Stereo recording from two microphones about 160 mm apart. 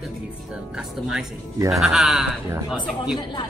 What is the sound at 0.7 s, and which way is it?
Speech, 5° right (ahead or behind).